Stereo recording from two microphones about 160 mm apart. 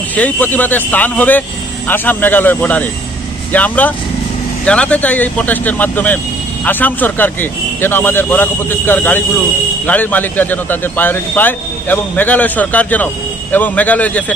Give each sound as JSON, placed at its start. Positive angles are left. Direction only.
{"t": 0.1, "sound": "speech", "side_deg": 10}